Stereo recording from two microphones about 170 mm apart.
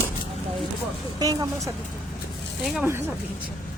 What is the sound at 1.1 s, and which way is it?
Speech, 20° right (ahead or behind).